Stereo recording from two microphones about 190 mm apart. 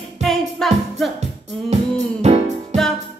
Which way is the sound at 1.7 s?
35° right (ahead or behind).